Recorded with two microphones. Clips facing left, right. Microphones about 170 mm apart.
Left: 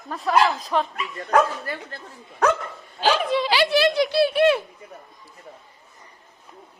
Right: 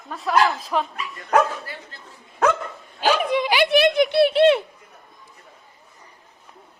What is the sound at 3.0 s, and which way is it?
A child's voice, 15° right (ahead or behind).